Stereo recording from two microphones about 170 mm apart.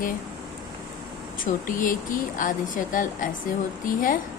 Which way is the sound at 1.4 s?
50° left (ahead or behind).